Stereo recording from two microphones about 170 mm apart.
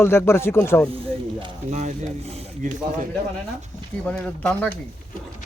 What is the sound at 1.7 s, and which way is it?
Speech, 45° right (ahead or behind).